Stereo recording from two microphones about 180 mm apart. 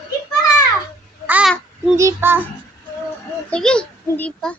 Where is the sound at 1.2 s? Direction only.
10° right (ahead or behind).